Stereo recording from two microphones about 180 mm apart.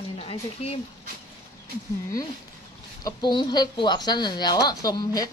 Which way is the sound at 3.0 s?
20° left (ahead or behind).